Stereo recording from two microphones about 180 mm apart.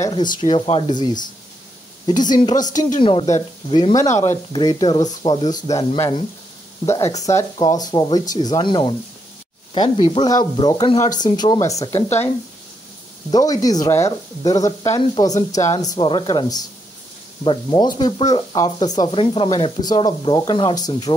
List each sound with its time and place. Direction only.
0.5 s speech: 30° left (ahead or behind)
2.5 s speech: 45° left (ahead or behind)
3.0 s speech: 30° left (ahead or behind)
13.3 s speech: 20° left (ahead or behind)